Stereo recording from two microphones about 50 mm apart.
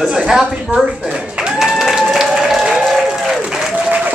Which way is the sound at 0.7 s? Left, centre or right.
Centre.